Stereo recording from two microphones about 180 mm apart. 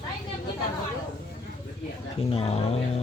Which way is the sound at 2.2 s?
35° left (ahead or behind).